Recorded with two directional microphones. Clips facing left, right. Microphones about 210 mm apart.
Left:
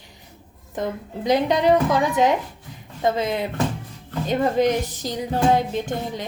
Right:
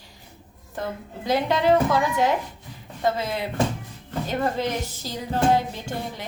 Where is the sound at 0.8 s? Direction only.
15° left (ahead or behind).